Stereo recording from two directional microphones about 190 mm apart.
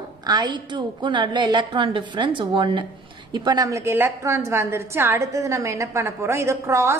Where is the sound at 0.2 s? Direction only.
20° right (ahead or behind).